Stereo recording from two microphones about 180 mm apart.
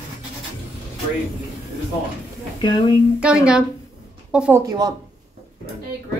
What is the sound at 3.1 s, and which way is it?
A woman's voice, 5° right (ahead or behind).